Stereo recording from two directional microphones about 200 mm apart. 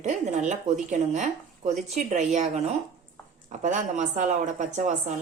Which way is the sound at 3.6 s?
35° right (ahead or behind).